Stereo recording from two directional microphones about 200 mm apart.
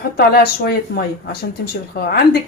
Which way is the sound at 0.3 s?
50° left (ahead or behind).